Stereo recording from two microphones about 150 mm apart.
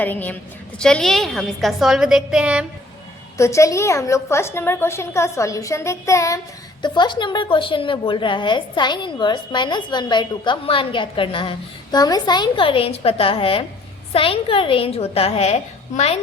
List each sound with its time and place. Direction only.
0.0 s a woman's voice: 10° left (ahead or behind); by 2.6 s 5° right (ahead or behind)
3.3 s a woman's voice: 20° left (ahead or behind); by 16.2 s 45° left (ahead or behind)